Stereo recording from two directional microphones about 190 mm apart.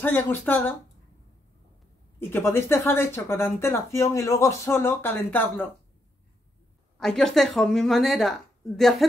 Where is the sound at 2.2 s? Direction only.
10° left (ahead or behind).